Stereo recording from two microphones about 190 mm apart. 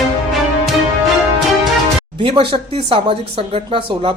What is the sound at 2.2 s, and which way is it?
Speech, 30° right (ahead or behind).